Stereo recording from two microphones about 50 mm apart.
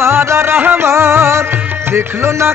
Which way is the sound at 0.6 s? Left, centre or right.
Right.